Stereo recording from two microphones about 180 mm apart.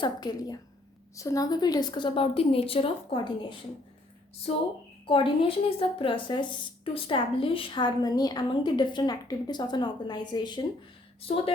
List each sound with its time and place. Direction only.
0.0 s speech: 25° left (ahead or behind)
5.0 s speech: 30° left (ahead or behind)